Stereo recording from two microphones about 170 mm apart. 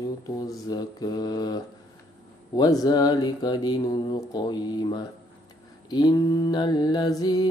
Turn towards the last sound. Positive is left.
turn(degrees=25)  # may be behind; listen again after turning